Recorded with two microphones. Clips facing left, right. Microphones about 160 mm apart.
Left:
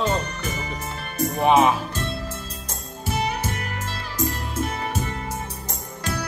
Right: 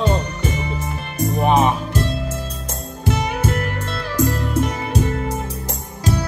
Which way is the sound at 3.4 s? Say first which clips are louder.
Right 8 dB; 55° right (ahead or behind).